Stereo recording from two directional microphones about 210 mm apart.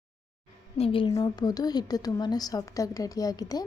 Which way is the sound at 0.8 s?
25° left (ahead or behind).